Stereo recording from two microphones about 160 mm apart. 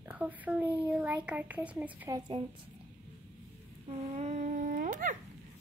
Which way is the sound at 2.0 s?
25° right (ahead or behind).